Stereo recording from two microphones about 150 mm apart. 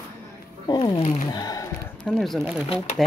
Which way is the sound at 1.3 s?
25° left (ahead or behind).